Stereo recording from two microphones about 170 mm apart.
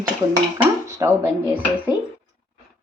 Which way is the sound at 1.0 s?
20° right (ahead or behind).